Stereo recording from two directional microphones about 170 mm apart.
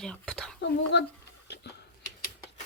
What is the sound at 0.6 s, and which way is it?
Speech, 90° left.